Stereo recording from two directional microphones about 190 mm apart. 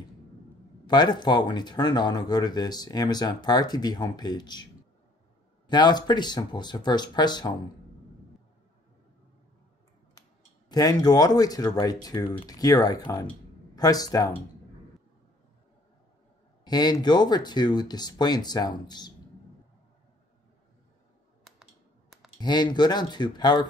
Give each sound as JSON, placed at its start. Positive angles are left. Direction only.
{"t": 0.8, "sound": "speech", "side_deg": 20}
{"t": 5.7, "sound": "speech", "side_deg": 25}
{"t": 10.7, "sound": "speech", "side_deg": 20}
{"t": 16.6, "sound": "speech", "side_deg": 20}
{"t": 22.4, "sound": "speech", "side_deg": 20}